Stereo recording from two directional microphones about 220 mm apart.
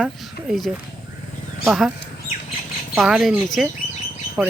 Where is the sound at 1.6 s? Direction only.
Centre (ahead or behind).